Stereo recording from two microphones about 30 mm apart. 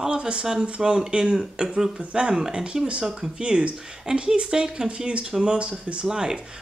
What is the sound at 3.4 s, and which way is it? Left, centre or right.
Speech, right.